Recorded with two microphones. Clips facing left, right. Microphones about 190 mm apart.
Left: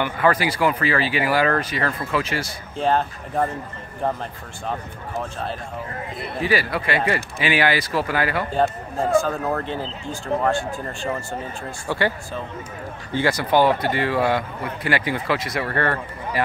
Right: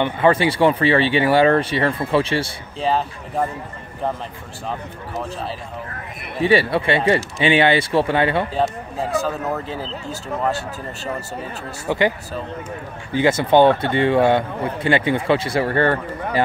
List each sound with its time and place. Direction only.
0.0 s a man's voice: 25° right (ahead or behind)
2.8 s speech: centre (ahead or behind)
6.4 s a man's voice: 30° right (ahead or behind)
8.5 s speech: centre (ahead or behind)
11.9 s speech: 20° right (ahead or behind)
13.1 s a man's voice: 20° right (ahead or behind)